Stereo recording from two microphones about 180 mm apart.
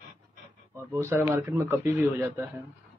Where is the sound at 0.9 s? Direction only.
15° right (ahead or behind).